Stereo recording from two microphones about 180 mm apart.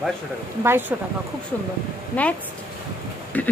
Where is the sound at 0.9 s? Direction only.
10° right (ahead or behind).